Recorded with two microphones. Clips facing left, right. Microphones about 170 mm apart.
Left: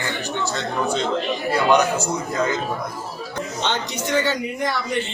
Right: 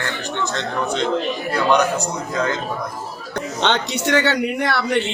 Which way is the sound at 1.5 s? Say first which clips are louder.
Even; 5° left (ahead or behind).